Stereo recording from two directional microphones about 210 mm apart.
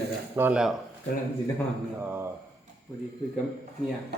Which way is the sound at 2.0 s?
10° right (ahead or behind).